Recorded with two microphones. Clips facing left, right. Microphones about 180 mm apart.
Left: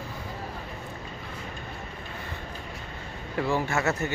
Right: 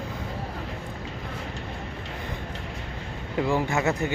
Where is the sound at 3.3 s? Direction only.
15° right (ahead or behind).